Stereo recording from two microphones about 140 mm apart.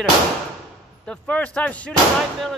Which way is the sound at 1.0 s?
10° left (ahead or behind).